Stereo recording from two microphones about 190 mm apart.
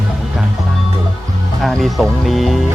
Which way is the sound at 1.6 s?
Centre (ahead or behind).